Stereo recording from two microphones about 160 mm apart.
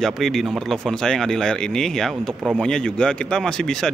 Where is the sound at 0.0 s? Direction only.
Centre (ahead or behind).